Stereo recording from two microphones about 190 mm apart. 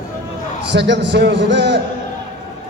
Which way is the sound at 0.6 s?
65° right (ahead or behind).